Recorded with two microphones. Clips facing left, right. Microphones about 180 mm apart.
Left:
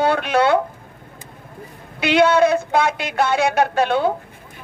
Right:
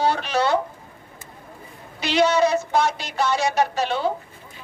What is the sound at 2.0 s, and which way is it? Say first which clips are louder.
A man's voice: left 4 dB; 55° left (ahead or behind).